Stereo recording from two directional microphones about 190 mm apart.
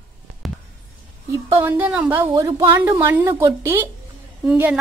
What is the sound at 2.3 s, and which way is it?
Speech, 20° right (ahead or behind).